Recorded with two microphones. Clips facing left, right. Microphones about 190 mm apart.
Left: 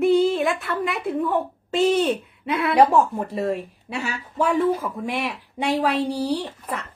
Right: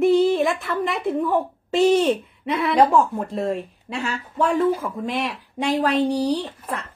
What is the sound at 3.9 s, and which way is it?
Speech, centre (ahead or behind).